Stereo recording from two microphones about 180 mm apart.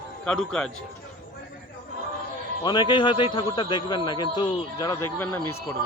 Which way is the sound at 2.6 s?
25° left (ahead or behind).